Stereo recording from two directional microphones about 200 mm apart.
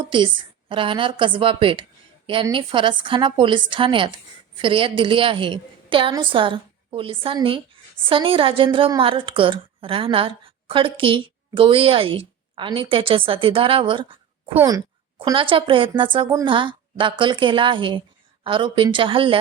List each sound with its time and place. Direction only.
0.0 s a woman's voice: 25° right (ahead or behind)